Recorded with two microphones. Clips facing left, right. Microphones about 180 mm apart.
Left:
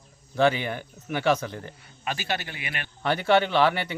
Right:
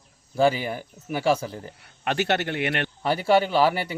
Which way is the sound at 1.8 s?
65° right (ahead or behind).